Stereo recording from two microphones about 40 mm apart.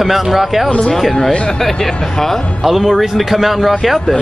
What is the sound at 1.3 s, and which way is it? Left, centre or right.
Speech, centre.